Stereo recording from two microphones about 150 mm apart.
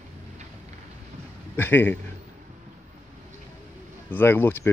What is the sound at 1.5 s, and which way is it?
Speech, 15° left (ahead or behind).